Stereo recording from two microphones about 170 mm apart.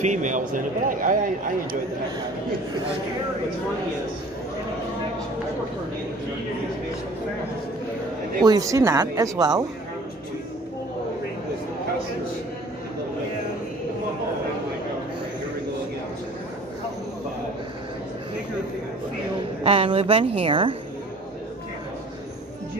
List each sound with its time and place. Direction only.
0.0 s a man's voice: 45° right (ahead or behind)
8.5 s speech: 20° right (ahead or behind)
19.6 s a woman's voice: 35° right (ahead or behind)